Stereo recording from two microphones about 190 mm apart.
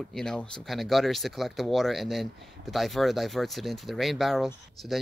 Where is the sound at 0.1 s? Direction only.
5° left (ahead or behind).